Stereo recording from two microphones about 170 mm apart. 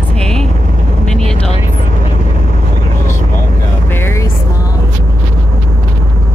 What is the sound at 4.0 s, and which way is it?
Music, 15° left (ahead or behind).